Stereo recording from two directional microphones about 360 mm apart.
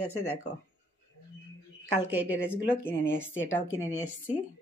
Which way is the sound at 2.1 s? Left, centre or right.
Centre.